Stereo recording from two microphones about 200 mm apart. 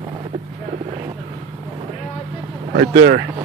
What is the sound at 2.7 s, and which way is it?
Speech, 70° right (ahead or behind).